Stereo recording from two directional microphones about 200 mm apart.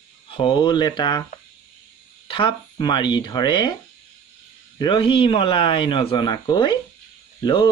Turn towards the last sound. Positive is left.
turn(degrees=20)  # may be behind; listen again after turning